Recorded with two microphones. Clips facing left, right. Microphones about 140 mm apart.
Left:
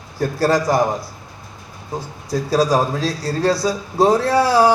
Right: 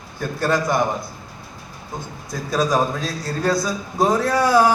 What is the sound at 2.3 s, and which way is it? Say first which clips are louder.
A man's voice: left 4 dB; 35° left (ahead or behind).